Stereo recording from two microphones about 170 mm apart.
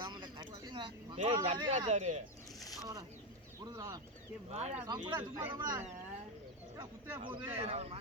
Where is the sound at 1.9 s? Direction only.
40° right (ahead or behind).